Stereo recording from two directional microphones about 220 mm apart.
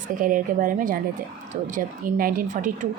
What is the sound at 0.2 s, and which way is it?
A woman's voice, 40° right (ahead or behind).